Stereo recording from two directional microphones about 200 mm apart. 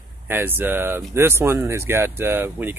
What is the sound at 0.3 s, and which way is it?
Speech, 10° right (ahead or behind).